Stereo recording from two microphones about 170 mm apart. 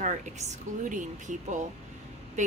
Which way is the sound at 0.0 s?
45° right (ahead or behind).